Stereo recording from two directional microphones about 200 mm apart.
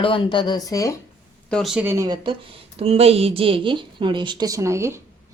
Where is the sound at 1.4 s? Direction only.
Centre (ahead or behind).